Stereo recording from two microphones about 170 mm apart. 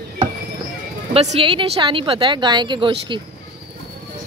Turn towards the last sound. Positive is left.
turn(degrees=-30)  # may be behind; listen again after turning